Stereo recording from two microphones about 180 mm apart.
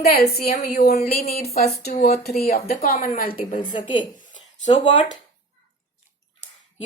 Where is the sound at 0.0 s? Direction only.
55° left (ahead or behind).